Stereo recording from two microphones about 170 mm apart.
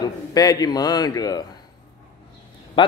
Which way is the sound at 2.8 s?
30° left (ahead or behind).